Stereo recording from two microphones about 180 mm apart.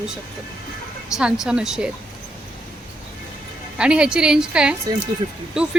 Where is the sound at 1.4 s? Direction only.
Centre (ahead or behind).